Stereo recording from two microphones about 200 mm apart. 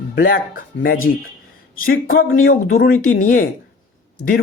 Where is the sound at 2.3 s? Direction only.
80° left.